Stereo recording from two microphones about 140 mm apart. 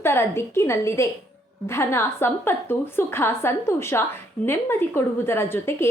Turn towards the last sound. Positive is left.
turn(degrees=20)  # may be behind; listen again after turning